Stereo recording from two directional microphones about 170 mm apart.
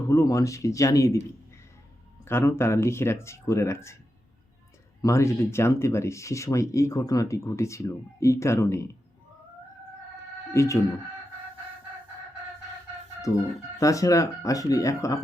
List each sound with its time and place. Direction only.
0.1 s speech: 15° left (ahead or behind)
2.2 s speech: 15° left (ahead or behind)
5.0 s speech: 15° left (ahead or behind)
10.5 s speech: 15° left (ahead or behind)
13.3 s speech: 15° left (ahead or behind)